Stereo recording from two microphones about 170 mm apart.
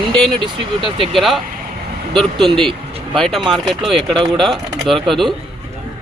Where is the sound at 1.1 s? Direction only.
Centre (ahead or behind).